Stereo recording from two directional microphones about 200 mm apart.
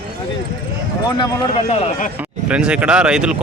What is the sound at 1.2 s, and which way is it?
Speech, 30° left (ahead or behind).